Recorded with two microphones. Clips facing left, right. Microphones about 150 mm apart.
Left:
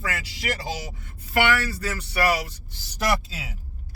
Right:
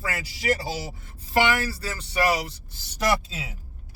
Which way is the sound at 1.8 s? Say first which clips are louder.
Even; 25° right (ahead or behind).